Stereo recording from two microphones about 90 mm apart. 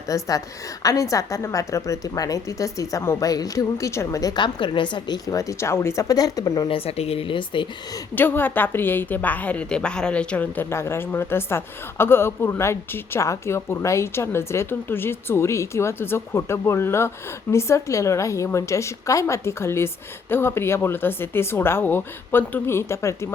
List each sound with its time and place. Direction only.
0.1 s a woman's voice: 40° left (ahead or behind)
4.4 s speech: 60° left (ahead or behind); by 5.9 s 30° left (ahead or behind)
6.0 s a woman's voice: 40° left (ahead or behind)
6.7 s speech: 90° left; by 7.7 s 65° left (ahead or behind)
8.1 s a woman's voice: 20° left (ahead or behind)
10.7 s a woman's voice: 30° left (ahead or behind)